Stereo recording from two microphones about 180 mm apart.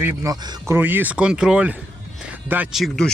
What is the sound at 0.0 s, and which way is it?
Speech, 15° right (ahead or behind).